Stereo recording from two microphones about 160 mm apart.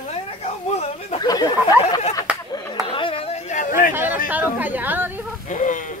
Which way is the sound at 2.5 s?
30° left (ahead or behind).